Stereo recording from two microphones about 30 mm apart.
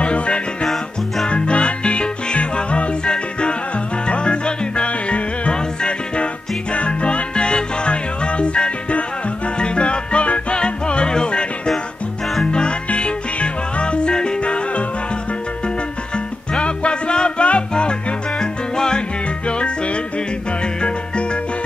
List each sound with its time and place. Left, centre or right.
0.0 s music: left
16.5 s music: left
18.4 s music: left
19.4 s music: left